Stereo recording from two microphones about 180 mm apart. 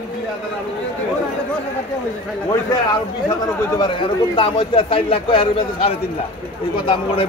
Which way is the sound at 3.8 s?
30° left (ahead or behind).